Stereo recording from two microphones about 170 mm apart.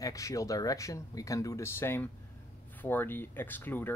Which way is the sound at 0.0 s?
20° left (ahead or behind).